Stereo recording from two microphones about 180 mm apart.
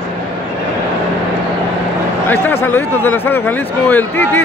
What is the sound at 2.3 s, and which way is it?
Speech, 10° left (ahead or behind).